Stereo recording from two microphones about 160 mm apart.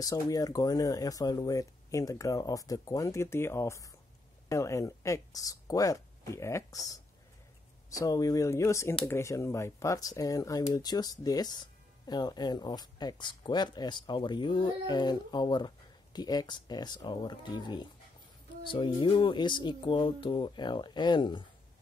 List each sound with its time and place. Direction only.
0.0 s speech: 20° left (ahead or behind)
8.0 s speech: 20° left (ahead or behind)